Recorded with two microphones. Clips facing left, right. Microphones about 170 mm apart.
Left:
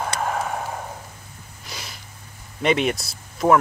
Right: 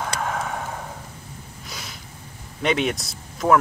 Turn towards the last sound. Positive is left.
turn(degrees=0)  # may be behind; listen again after turning